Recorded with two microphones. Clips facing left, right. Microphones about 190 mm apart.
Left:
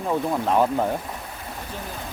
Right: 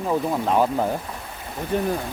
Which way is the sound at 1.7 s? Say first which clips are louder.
Right 15 dB; 65° right (ahead or behind).